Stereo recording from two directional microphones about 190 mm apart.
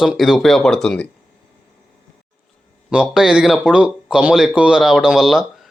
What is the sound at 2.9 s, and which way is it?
Speech, 5° right (ahead or behind).